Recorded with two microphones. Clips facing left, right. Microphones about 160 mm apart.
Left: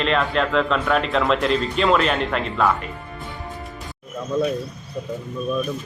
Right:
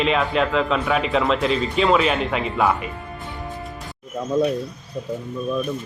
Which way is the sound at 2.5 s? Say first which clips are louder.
Even; 15° right (ahead or behind).